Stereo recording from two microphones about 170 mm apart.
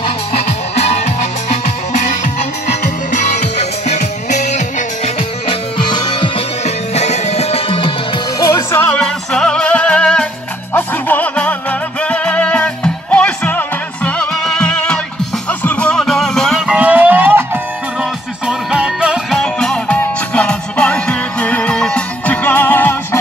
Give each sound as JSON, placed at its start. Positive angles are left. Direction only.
{"t": 0.0, "sound": "music", "side_deg": 35}
{"t": 5.9, "sound": "music", "side_deg": 30}
{"t": 8.4, "sound": "music", "side_deg": 15}
{"t": 18.5, "sound": "music", "side_deg": -5}